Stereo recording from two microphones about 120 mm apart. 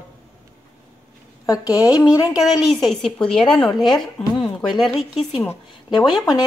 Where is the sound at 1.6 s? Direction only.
30° left (ahead or behind).